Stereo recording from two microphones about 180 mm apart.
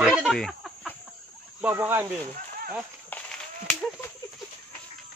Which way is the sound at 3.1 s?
10° left (ahead or behind).